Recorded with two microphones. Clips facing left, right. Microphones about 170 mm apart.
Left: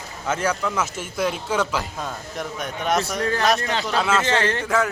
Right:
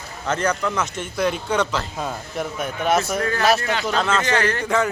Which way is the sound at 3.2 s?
30° left (ahead or behind).